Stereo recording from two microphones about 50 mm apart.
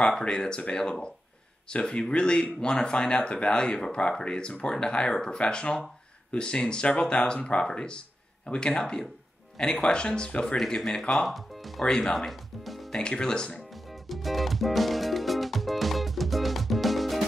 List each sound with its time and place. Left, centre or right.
0.0 s speech: centre
10.8 s speech: centre
12.9 s speech: centre
14.0 s music: centre